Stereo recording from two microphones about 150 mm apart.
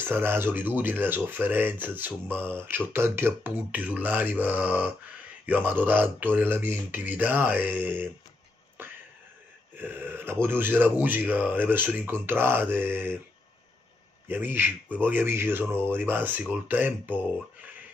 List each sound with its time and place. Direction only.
0.0 s speech: 15° right (ahead or behind)
9.8 s speech: 15° right (ahead or behind)
14.2 s a man's voice: 15° right (ahead or behind)